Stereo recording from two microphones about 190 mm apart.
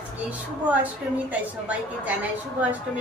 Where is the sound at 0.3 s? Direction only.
5° right (ahead or behind).